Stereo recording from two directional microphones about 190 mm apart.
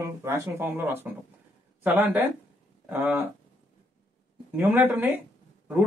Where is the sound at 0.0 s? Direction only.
15° right (ahead or behind).